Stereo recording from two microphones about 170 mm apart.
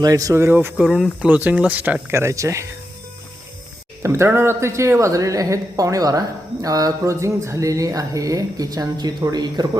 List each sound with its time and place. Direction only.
0.0 s speech: 20° right (ahead or behind)
4.0 s speech: 15° right (ahead or behind)